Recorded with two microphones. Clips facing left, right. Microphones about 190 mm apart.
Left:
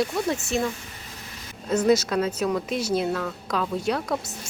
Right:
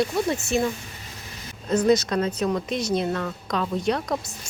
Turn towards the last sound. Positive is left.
turn(degrees=0)  # may be behind; listen again after turning